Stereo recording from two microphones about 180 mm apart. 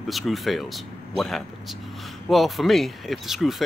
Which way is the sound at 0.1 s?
Centre (ahead or behind).